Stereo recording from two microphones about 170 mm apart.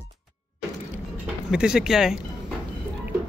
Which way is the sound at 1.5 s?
5° right (ahead or behind).